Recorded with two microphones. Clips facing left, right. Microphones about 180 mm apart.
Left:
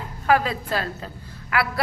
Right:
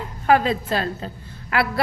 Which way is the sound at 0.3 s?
25° right (ahead or behind).